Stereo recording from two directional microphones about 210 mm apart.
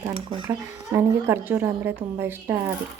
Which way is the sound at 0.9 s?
10° right (ahead or behind).